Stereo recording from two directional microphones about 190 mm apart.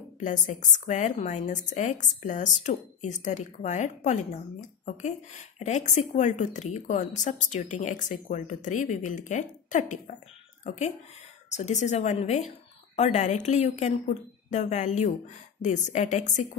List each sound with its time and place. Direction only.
0.2 s a woman's voice: 40° left (ahead or behind)